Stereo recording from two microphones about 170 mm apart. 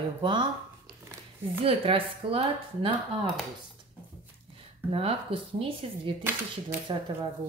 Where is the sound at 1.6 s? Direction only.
35° right (ahead or behind).